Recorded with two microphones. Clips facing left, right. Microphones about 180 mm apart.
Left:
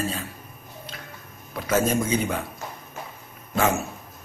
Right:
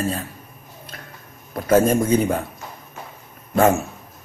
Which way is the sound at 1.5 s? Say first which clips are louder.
Right 7 dB; 55° right (ahead or behind).